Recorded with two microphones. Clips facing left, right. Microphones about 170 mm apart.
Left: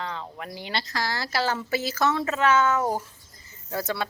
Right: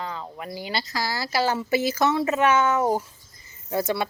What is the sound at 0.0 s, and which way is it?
Speech, 5° right (ahead or behind).